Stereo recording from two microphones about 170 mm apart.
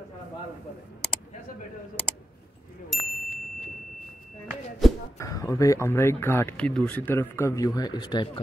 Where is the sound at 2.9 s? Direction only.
Centre (ahead or behind).